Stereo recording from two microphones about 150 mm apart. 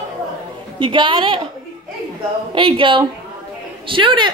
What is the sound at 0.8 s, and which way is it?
Speech, 35° right (ahead or behind).